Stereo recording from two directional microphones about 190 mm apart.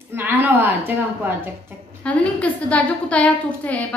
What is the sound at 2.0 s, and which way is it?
A woman's voice, 5° left (ahead or behind).